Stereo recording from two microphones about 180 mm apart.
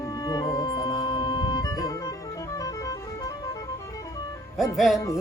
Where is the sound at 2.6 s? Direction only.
20° left (ahead or behind).